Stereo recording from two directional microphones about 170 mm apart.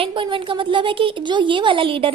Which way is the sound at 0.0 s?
30° right (ahead or behind).